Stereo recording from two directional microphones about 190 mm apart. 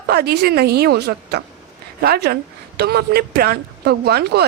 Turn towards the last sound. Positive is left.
turn(degrees=-55)  # may be behind; listen again after turning